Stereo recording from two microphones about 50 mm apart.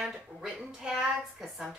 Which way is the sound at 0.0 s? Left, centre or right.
Centre.